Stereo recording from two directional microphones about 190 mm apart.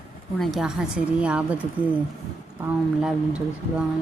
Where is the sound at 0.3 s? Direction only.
Centre (ahead or behind).